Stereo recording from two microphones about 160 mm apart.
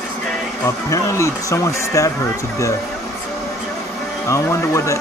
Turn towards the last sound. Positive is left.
turn(degrees=20)  # may be behind; listen again after turning